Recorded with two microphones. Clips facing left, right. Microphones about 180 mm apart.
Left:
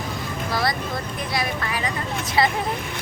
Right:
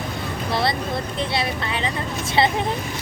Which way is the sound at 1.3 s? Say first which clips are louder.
Right 1 dB; 25° right (ahead or behind).